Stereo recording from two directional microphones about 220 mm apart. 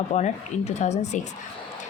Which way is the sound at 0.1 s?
30° left (ahead or behind).